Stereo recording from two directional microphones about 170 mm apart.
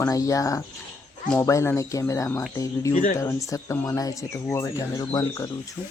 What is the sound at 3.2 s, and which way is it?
Speech, 20° left (ahead or behind).